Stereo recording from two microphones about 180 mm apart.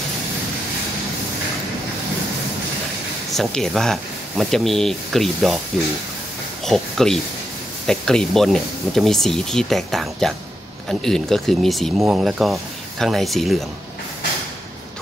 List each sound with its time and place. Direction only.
3.3 s speech: centre (ahead or behind)
6.6 s speech: centre (ahead or behind)